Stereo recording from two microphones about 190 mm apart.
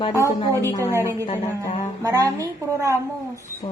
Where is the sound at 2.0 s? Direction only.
15° right (ahead or behind).